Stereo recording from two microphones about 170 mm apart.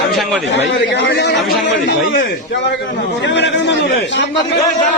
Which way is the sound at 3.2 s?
90° left.